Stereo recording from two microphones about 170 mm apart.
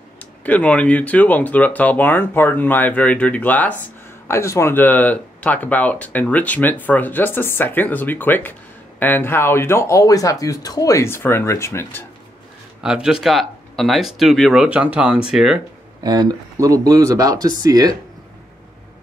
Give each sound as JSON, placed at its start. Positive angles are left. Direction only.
{"t": 0.4, "sound": "speech", "side_deg": 10}
{"t": 12.8, "sound": "speech", "side_deg": -5}
{"t": 16.0, "sound": "speech", "side_deg": -25}